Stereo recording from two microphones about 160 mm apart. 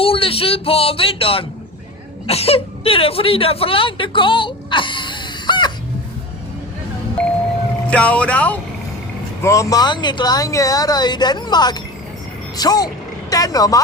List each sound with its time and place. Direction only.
0.0 s a sound: 35° left (ahead or behind)
2.2 s speech: 40° left (ahead or behind)
7.9 s speech: 10° left (ahead or behind)
9.4 s speech: 20° left (ahead or behind)